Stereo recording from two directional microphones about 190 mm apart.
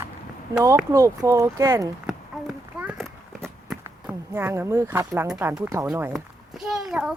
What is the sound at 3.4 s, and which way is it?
Walk, centre (ahead or behind).